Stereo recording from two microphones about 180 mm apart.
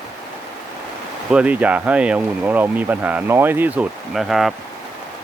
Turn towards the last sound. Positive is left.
turn(degrees=0)  # may be behind; listen again after turning